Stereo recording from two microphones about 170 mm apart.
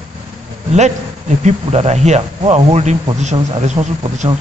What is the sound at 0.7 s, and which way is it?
A man's voice, 40° right (ahead or behind).